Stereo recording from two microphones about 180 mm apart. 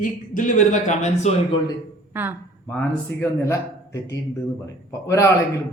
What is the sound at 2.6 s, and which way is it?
A man's voice, 10° left (ahead or behind).